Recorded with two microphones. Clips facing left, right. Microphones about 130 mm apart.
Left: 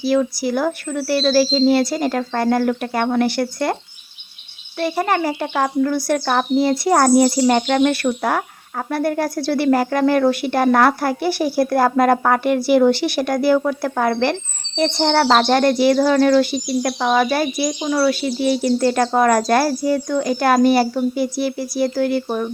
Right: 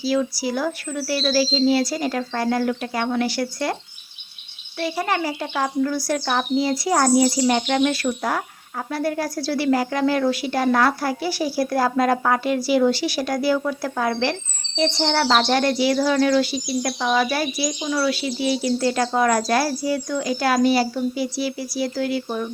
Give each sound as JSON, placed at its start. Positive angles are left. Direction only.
{"t": 0.0, "sound": "speech", "side_deg": 55}
{"t": 4.8, "sound": "a woman's voice", "side_deg": 55}